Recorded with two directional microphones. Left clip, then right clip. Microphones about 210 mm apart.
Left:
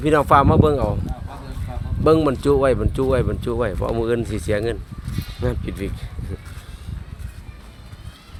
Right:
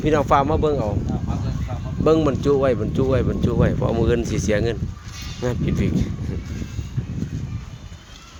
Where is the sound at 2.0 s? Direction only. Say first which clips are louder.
Left 1 dB; 10° left (ahead or behind).